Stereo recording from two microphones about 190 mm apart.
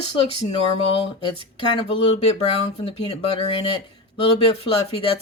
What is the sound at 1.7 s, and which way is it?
Speech, 30° left (ahead or behind).